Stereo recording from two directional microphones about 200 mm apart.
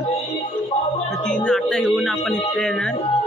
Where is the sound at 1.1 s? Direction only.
5° left (ahead or behind).